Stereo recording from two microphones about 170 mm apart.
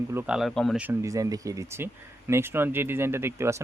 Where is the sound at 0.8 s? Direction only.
15° right (ahead or behind).